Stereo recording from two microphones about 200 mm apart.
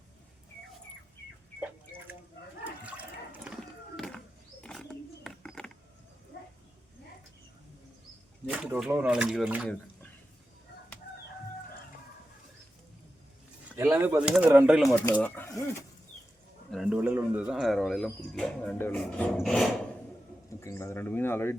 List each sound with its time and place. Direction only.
2.8 s toilet flush: 5° right (ahead or behind)
4.6 s roaring cats: 5° left (ahead or behind)
6.3 s a sound: 55° left (ahead or behind)
8.4 s speech: 5° right (ahead or behind)
13.7 s speech: 10° right (ahead or behind)
15.0 s speech: 10° left (ahead or behind)
16.7 s speech: 5° right (ahead or behind)
20.6 s speech: 15° left (ahead or behind)